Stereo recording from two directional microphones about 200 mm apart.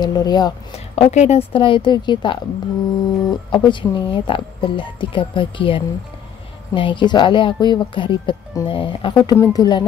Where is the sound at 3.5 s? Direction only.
25° left (ahead or behind).